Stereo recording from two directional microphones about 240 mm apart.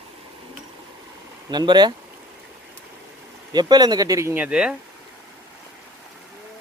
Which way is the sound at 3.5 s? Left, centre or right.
Centre.